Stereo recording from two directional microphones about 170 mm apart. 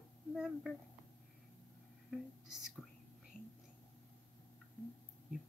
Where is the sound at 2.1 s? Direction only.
Centre (ahead or behind).